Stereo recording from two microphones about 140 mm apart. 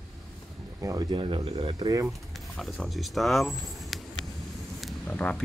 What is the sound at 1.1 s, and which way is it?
Speech, 40° right (ahead or behind).